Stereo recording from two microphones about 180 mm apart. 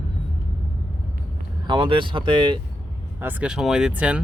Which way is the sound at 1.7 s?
30° right (ahead or behind).